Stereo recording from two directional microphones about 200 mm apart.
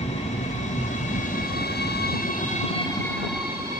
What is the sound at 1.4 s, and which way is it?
Train, 50° left (ahead or behind).